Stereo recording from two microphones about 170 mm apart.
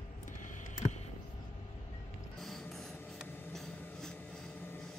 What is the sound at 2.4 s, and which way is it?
Printer, centre (ahead or behind).